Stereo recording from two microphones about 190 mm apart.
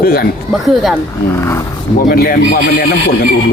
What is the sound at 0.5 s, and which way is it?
Speech, centre (ahead or behind).